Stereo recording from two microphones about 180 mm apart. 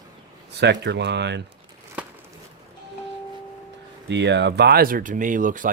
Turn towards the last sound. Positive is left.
turn(degrees=-45)  # may be behind; listen again after turning